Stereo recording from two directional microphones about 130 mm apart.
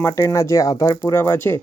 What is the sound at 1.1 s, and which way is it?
Speech, 15° left (ahead or behind).